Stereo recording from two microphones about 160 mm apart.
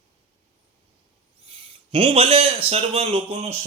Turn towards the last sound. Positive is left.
turn(degrees=-40)  # may be behind; listen again after turning